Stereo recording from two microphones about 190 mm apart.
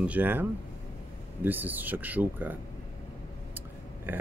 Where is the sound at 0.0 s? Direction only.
10° right (ahead or behind).